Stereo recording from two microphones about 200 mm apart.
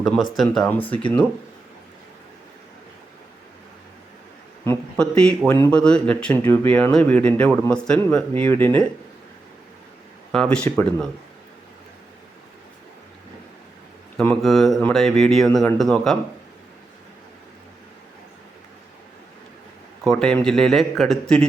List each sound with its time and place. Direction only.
0.3 s a man's voice: 5° left (ahead or behind)
4.6 s a man's voice: 5° left (ahead or behind)
10.3 s speech: 5° left (ahead or behind)
14.2 s speech: centre (ahead or behind)
20.1 s speech: 5° left (ahead or behind)